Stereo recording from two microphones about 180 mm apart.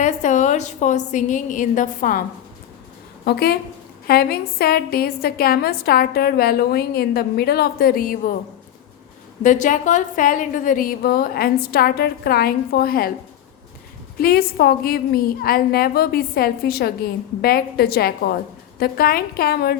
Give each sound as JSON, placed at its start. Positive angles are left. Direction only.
{"t": 0.0, "sound": "a woman's voice", "side_deg": 40}
{"t": 3.2, "sound": "a woman's voice", "side_deg": 60}
{"t": 9.4, "sound": "a woman's voice", "side_deg": 45}
{"t": 14.2, "sound": "a woman's voice", "side_deg": 55}